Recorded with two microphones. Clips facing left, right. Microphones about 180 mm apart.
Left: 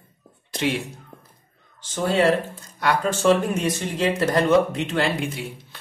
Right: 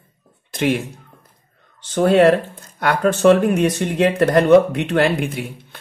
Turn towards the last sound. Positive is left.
turn(degrees=-55)  # may be behind; listen again after turning